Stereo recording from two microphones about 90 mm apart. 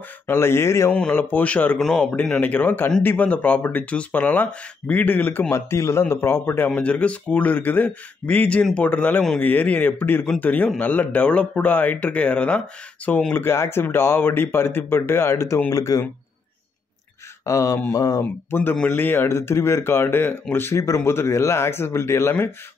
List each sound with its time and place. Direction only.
0.3 s speech: 30° left (ahead or behind)
0.9 s speech: 15° left (ahead or behind)
1.8 s speech: centre (ahead or behind)
2.0 s speech: 15° left (ahead or behind)
13.3 s speech: 25° left (ahead or behind)
17.5 s speech: 35° left (ahead or behind)
18.2 s speech: 20° left (ahead or behind)